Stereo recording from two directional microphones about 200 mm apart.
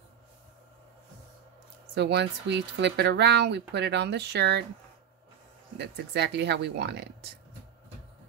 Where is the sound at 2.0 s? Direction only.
60° right (ahead or behind).